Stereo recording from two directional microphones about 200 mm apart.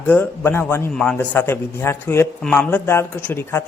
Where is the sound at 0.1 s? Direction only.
10° left (ahead or behind).